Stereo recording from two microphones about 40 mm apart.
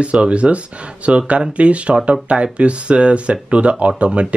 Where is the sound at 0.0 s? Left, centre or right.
Right.